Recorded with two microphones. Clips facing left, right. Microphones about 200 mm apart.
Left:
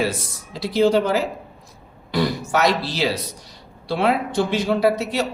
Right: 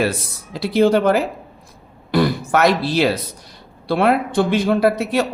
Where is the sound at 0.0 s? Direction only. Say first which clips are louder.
Right 3 dB; 60° right (ahead or behind).